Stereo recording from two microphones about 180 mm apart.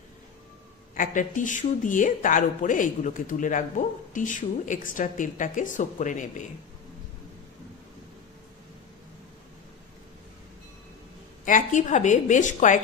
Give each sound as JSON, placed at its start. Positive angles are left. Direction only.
{"t": 0.9, "sound": "speech", "side_deg": 50}
{"t": 11.4, "sound": "speech", "side_deg": 45}